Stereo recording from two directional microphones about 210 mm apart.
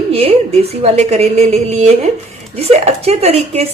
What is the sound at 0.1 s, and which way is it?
A woman's voice, 25° right (ahead or behind).